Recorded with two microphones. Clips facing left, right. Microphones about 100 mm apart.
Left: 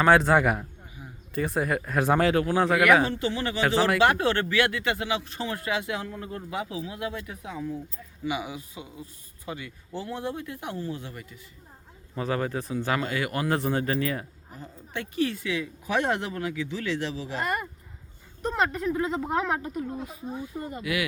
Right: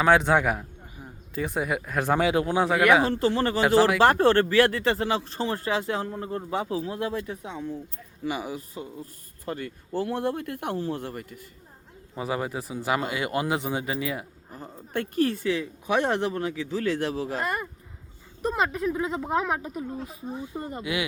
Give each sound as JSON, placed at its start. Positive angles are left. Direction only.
{"t": 0.0, "sound": "speech", "side_deg": 0}
{"t": 2.3, "sound": "speech", "side_deg": -20}
{"t": 3.1, "sound": "speech", "side_deg": -40}
{"t": 3.6, "sound": "speech", "side_deg": -5}
{"t": 4.0, "sound": "speech", "side_deg": -40}
{"t": 8.2, "sound": "speech", "side_deg": -40}
{"t": 12.1, "sound": "speech", "side_deg": -15}
{"t": 13.5, "sound": "speech", "side_deg": -10}
{"t": 14.6, "sound": "speech", "side_deg": -45}
{"t": 15.4, "sound": "speech", "side_deg": -35}
{"t": 18.4, "sound": "speech", "side_deg": -5}
{"t": 20.3, "sound": "speech", "side_deg": -25}